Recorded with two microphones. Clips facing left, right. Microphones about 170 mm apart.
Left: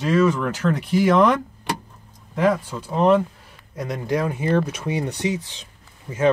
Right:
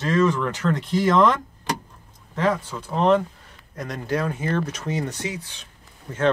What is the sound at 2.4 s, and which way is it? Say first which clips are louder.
Speech: left 3 dB; 10° left (ahead or behind).